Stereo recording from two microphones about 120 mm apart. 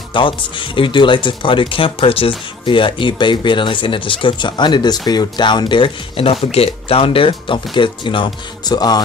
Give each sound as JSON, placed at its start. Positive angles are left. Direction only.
{"t": 0.1, "sound": "speech", "side_deg": 45}